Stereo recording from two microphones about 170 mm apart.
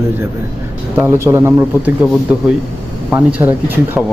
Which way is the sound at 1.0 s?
15° right (ahead or behind).